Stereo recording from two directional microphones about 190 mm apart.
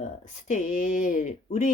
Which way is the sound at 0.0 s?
40° left (ahead or behind).